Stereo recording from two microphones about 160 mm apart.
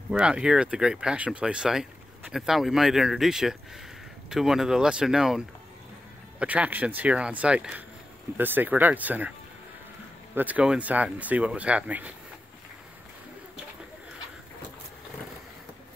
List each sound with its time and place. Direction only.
0.1 s speech: 5° right (ahead or behind)
6.4 s speech: 10° right (ahead or behind)
10.3 s speech: 10° right (ahead or behind)